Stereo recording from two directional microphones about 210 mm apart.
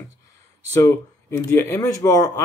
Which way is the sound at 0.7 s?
15° left (ahead or behind).